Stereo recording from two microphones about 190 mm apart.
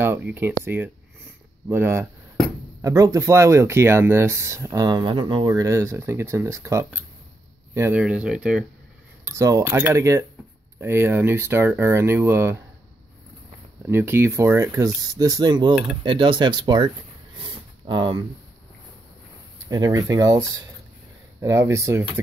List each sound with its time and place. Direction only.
0.0 s speech: 10° right (ahead or behind)
1.7 s speech: 15° right (ahead or behind)
9.4 s speech: 15° right (ahead or behind)
13.8 s speech: 10° right (ahead or behind)
17.4 s a sound: 25° right (ahead or behind)
19.7 s speech: 20° right (ahead or behind)